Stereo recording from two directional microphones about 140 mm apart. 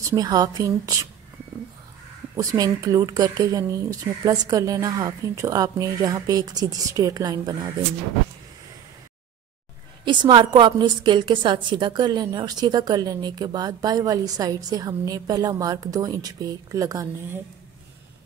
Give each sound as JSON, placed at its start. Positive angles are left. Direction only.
{"t": 0.0, "sound": "a woman's voice", "side_deg": -25}
{"t": 2.3, "sound": "a woman's voice", "side_deg": -25}
{"t": 10.0, "sound": "a woman's voice", "side_deg": -35}